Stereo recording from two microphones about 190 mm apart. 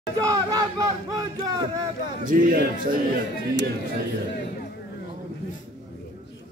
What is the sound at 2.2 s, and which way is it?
A man's voice, 45° right (ahead or behind).